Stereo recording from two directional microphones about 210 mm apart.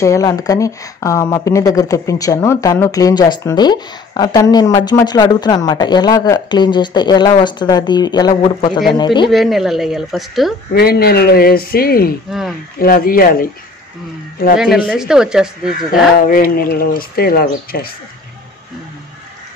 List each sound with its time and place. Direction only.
0.0 s speech: 15° left (ahead or behind)
9.3 s speech: centre (ahead or behind)
10.7 s speech: 45° left (ahead or behind)
12.3 s speech: centre (ahead or behind)
12.7 s speech: 45° left (ahead or behind)
14.9 s speech: 5° right (ahead or behind)
15.9 s speech: 45° left (ahead or behind)